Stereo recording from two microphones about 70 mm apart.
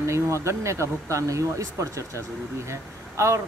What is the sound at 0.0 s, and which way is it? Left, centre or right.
Speech, right.